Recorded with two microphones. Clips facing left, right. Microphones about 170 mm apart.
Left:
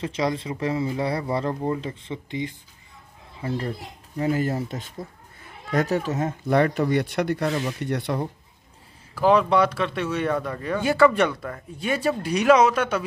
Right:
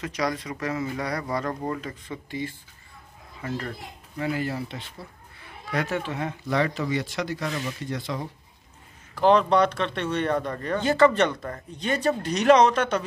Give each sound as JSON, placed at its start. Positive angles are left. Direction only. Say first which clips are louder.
{"t": 0.0, "sound": "speech", "louder": "left 3 dB", "side_deg": 25}
{"t": 4.2, "sound": "a child's voice", "louder": "left 4 dB", "side_deg": 45}
{"t": 9.1, "sound": "speech", "louder": "even", "side_deg": 5}